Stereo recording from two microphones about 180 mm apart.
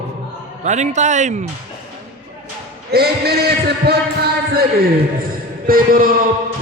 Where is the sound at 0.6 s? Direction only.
40° right (ahead or behind).